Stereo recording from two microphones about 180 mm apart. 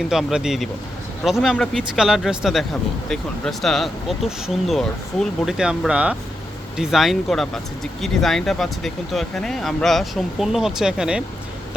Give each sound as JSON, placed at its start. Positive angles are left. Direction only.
{"t": 0.1, "sound": "speech", "side_deg": -5}